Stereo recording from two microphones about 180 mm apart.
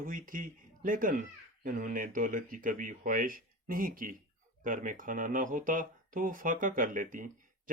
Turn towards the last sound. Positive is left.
turn(degrees=-45)  # may be behind; listen again after turning